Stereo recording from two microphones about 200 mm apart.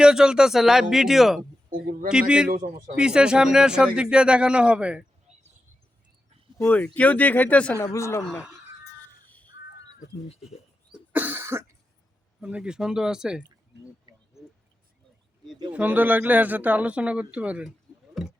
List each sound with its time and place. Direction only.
0.0 s speech: 5° right (ahead or behind)
2.5 s speech: 45° right (ahead or behind)
2.9 s speech: 5° right (ahead or behind)
6.6 s speech: 10° left (ahead or behind)
9.2 s crow: 5° left (ahead or behind)
10.9 s cough: 10° right (ahead or behind)
12.4 s speech: 5° right (ahead or behind)
13.7 s speech: 60° right (ahead or behind)
15.7 s speech: 10° right (ahead or behind)